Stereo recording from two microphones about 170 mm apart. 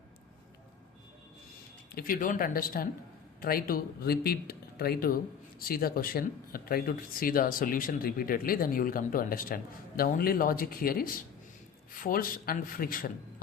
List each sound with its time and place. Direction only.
1.9 s speech: 60° left (ahead or behind)